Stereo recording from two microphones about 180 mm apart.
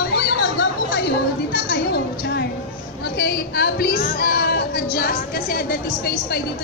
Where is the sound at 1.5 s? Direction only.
65° left (ahead or behind).